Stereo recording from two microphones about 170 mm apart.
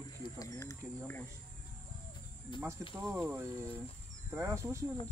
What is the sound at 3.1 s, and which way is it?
Speech, 10° right (ahead or behind).